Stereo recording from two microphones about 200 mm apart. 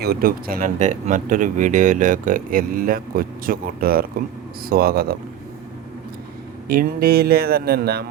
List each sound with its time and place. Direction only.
0.0 s speech: 50° right (ahead or behind)
6.7 s speech: 50° right (ahead or behind)